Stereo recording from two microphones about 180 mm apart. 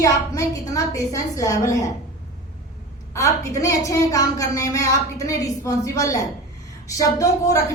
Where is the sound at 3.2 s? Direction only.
15° left (ahead or behind).